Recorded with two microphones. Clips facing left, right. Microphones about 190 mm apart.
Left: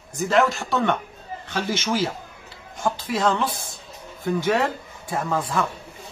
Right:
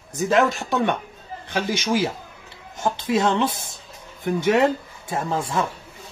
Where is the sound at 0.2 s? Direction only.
15° right (ahead or behind).